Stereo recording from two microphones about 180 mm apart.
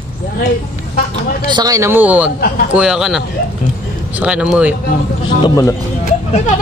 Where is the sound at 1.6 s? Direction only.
20° right (ahead or behind).